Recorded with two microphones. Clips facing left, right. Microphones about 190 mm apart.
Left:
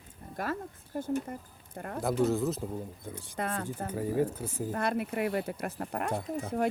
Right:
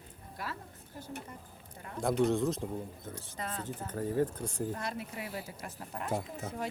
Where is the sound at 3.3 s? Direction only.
60° left (ahead or behind).